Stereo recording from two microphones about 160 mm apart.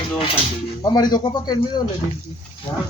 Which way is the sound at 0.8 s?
25° left (ahead or behind).